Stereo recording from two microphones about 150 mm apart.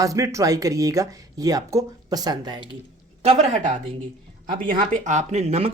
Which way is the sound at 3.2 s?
45° right (ahead or behind).